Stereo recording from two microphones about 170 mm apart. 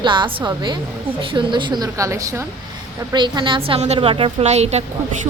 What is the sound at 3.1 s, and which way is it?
A woman's voice, 25° right (ahead or behind).